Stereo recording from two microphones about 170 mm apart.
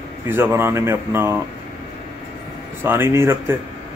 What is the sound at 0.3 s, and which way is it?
Speech, 15° right (ahead or behind).